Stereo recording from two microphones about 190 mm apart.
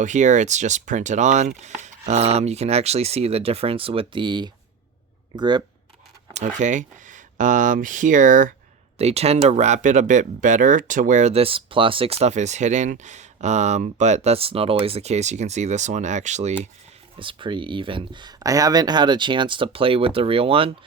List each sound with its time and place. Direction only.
0.0 s speech: 40° right (ahead or behind); by 5.6 s 25° right (ahead or behind)
6.6 s speech: 40° right (ahead or behind)
9.0 s speech: 35° right (ahead or behind)
17.2 s speech: 25° right (ahead or behind)